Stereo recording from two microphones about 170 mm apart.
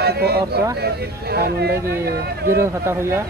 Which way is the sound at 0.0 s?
70° right (ahead or behind).